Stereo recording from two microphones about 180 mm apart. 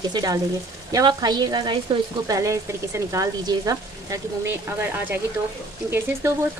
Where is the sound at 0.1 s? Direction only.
20° right (ahead or behind).